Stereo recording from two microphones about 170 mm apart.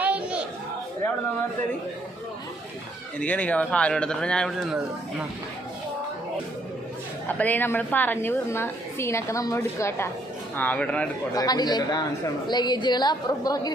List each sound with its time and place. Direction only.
0.0 s a sound: 10° right (ahead or behind)
3.2 s a man's voice: 10° left (ahead or behind)
7.3 s a woman's voice: 10° left (ahead or behind)
11.3 s a woman's voice: 25° left (ahead or behind)